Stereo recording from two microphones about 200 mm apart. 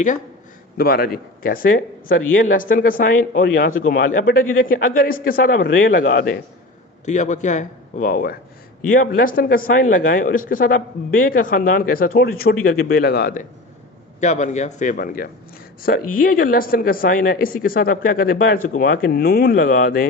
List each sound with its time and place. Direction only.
0.8 s a woman's voice: 50° left (ahead or behind)
5.6 s a man's voice: 75° left (ahead or behind)
6.1 s a man's voice: 55° left (ahead or behind)
7.0 s a man's voice: 35° left (ahead or behind)